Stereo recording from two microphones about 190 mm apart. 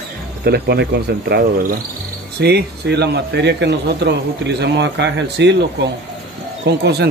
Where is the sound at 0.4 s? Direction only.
60° right (ahead or behind).